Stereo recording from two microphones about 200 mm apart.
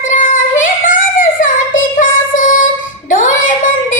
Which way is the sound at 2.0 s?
40° left (ahead or behind).